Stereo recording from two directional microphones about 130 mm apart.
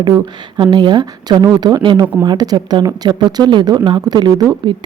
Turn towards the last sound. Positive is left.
turn(degrees=-35)  # may be behind; listen again after turning